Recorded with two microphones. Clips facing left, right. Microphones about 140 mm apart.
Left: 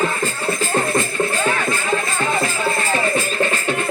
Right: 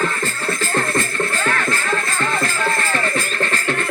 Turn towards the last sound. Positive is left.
turn(degrees=10)  # may be behind; listen again after turning